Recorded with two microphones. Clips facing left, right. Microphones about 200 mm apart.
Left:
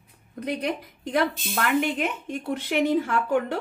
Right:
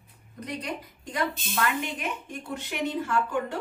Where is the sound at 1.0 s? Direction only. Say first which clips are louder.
Left 6 dB; 60° left (ahead or behind).